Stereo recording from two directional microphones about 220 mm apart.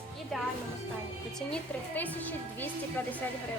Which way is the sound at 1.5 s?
5° left (ahead or behind).